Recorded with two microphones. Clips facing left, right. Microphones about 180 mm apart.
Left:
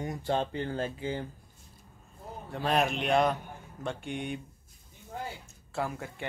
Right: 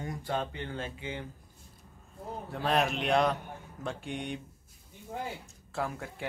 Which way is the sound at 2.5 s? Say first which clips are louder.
Left 1 dB; centre (ahead or behind).